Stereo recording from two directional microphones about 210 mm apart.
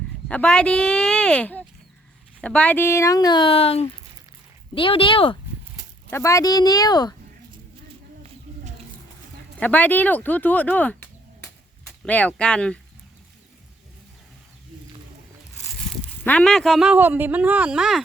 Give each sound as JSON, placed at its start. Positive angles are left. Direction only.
{"t": 0.3, "sound": "speech", "side_deg": 5}
{"t": 6.1, "sound": "speech", "side_deg": 15}
{"t": 8.5, "sound": "a sound", "side_deg": -30}
{"t": 9.6, "sound": "speech", "side_deg": 10}
{"t": 15.6, "sound": "speech", "side_deg": 5}